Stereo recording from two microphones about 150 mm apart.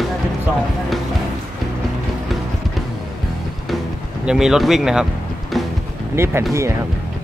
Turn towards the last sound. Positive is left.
turn(degrees=-15)  # may be behind; listen again after turning